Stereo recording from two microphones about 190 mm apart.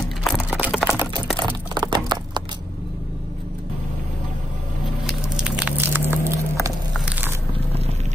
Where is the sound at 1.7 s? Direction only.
25° right (ahead or behind).